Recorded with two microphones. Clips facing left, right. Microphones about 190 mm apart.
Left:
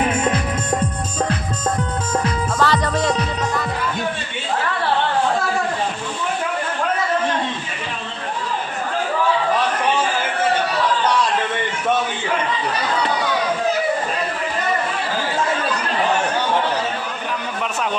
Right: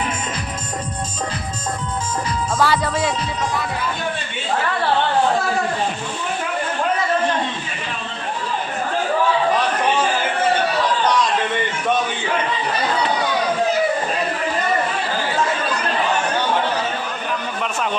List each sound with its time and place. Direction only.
0.1 s music: 60° left (ahead or behind)
2.6 s music: 5° right (ahead or behind)